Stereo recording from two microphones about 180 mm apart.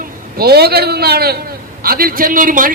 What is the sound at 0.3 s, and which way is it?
A man's voice, 60° right (ahead or behind).